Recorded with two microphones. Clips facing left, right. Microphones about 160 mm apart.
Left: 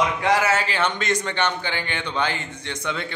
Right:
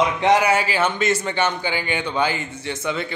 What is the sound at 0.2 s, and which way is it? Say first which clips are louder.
A man's voice: right 3 dB; 20° right (ahead or behind).